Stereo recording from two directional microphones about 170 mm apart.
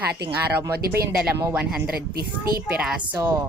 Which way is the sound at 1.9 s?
65° right (ahead or behind).